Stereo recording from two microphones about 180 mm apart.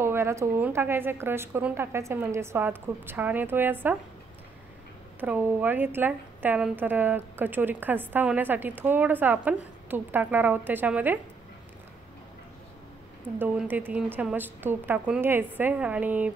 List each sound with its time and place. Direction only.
0.0 s a woman's voice: 15° right (ahead or behind)
5.2 s a woman's voice: 10° right (ahead or behind)
13.4 s a woman's voice: 10° right (ahead or behind)